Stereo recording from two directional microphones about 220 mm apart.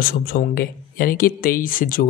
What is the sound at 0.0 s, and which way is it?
Speech, 45° left (ahead or behind).